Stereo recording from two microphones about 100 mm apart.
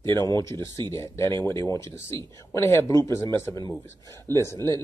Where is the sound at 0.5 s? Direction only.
45° right (ahead or behind).